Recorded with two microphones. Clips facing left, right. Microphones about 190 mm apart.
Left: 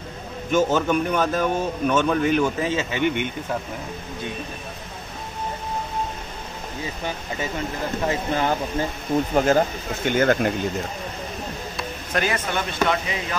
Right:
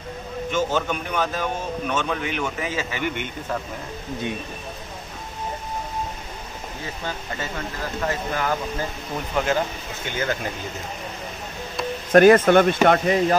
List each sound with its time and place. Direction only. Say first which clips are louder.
0.5 s a man's voice: left 4 dB; 45° left (ahead or behind); by 3.3 s 20° left (ahead or behind)
8.1 s speech: left 3 dB; 25° left (ahead or behind)
9.3 s speech: left 3 dB; 40° left (ahead or behind)
10.0 s speech: left 8 dB; 55° left (ahead or behind)
12.1 s speech: right 13 dB; 55° right (ahead or behind)